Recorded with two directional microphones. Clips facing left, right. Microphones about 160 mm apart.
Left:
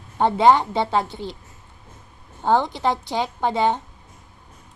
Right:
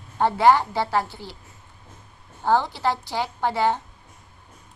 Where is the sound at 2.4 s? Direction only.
20° left (ahead or behind).